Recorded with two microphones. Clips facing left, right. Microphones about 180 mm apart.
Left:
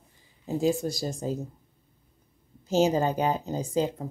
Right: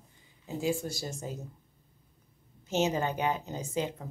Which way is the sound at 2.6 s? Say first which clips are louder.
Left 6 dB; 35° left (ahead or behind).